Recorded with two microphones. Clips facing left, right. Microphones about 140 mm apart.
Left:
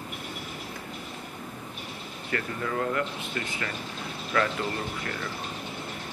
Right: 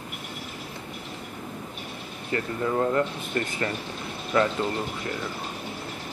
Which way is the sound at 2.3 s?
25° right (ahead or behind).